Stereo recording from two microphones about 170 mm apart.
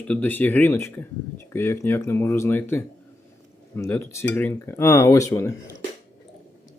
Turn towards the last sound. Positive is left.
turn(degrees=15)  # may be behind; listen again after turning